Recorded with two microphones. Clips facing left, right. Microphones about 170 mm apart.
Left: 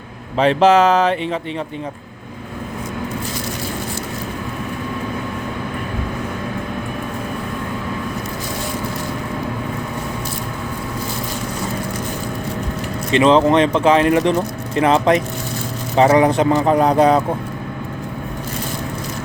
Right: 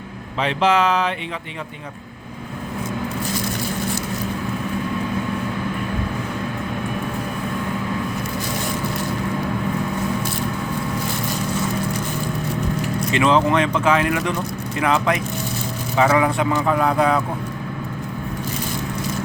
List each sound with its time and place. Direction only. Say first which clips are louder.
0.3 s speech: left 6 dB; 40° left (ahead or behind)
13.1 s speech: left 5 dB; 25° left (ahead or behind)